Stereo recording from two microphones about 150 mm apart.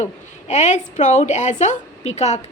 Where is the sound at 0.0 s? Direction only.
50° left (ahead or behind).